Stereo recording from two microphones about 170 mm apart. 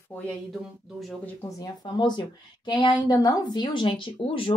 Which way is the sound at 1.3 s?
20° left (ahead or behind).